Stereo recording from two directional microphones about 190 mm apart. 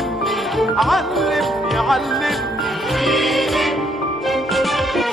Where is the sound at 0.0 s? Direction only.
Centre (ahead or behind).